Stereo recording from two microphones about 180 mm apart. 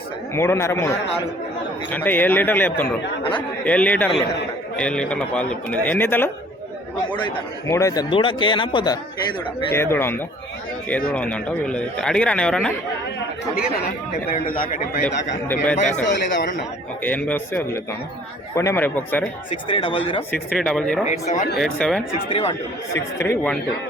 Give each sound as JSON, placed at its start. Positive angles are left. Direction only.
{"t": 0.3, "sound": "speech", "side_deg": 15}
{"t": 7.7, "sound": "speech", "side_deg": 15}
{"t": 9.6, "sound": "speech", "side_deg": 15}
{"t": 15.7, "sound": "a man's voice", "side_deg": 40}
{"t": 17.0, "sound": "speech", "side_deg": 10}
{"t": 19.6, "sound": "speech", "side_deg": 30}
{"t": 20.3, "sound": "speech", "side_deg": 5}
{"t": 21.1, "sound": "speech", "side_deg": 40}
{"t": 21.6, "sound": "speech", "side_deg": 5}
{"t": 22.3, "sound": "speech", "side_deg": 35}
{"t": 23.0, "sound": "speech", "side_deg": 15}